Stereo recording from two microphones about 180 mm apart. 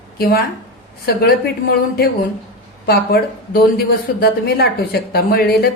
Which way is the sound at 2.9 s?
60° left (ahead or behind).